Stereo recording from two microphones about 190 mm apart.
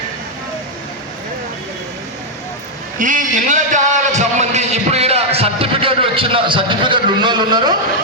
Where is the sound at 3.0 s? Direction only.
45° right (ahead or behind); by 7.8 s 20° right (ahead or behind).